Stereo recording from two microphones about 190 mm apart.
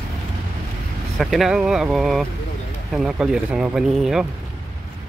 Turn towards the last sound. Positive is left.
turn(degrees=0)  # may be behind; listen again after turning